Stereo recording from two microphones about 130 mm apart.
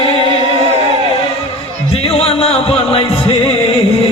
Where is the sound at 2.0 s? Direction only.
45° left (ahead or behind).